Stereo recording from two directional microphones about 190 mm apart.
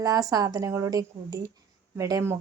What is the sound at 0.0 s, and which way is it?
Speech, 20° right (ahead or behind).